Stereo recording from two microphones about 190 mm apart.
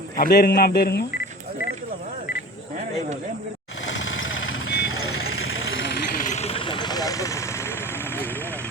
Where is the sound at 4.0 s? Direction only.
90° left.